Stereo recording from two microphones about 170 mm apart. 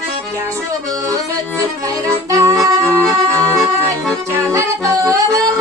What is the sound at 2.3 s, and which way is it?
Accordion, 20° right (ahead or behind).